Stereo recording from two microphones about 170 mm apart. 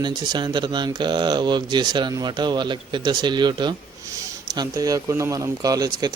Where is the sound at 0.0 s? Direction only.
25° right (ahead or behind).